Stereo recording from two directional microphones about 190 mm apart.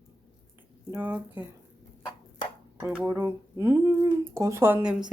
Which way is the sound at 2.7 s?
10° right (ahead or behind).